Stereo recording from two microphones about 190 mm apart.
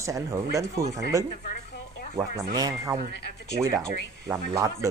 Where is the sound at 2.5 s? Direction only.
20° right (ahead or behind).